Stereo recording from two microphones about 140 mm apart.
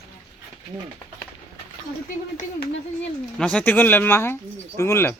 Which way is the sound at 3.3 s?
5° left (ahead or behind).